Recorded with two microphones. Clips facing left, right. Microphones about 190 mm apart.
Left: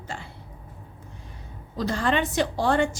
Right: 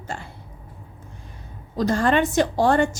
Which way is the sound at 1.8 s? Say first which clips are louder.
Right 5 dB; 45° right (ahead or behind).